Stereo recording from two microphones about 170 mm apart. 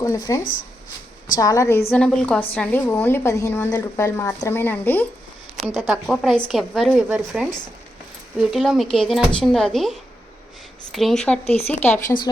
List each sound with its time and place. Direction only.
0.0 s a woman's voice: 20° left (ahead or behind)
1.9 s a woman's voice: 5° left (ahead or behind)
11.4 s speech: 35° left (ahead or behind)
11.7 s a woman's voice: 10° left (ahead or behind)